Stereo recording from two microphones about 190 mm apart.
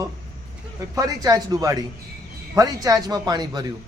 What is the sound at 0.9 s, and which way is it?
A man's voice, 20° right (ahead or behind).